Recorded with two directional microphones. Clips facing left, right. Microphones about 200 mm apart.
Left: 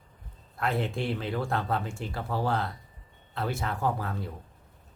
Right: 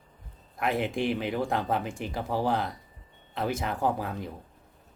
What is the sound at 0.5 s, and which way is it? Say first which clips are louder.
Speech: right 2 dB; 15° right (ahead or behind).